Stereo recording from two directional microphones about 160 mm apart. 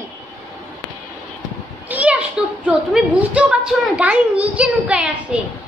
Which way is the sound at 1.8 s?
10° right (ahead or behind).